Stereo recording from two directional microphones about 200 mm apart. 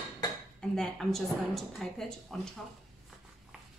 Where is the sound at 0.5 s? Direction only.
5° left (ahead or behind).